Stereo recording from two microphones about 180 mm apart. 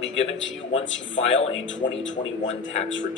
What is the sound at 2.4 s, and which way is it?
Speech, 90° left.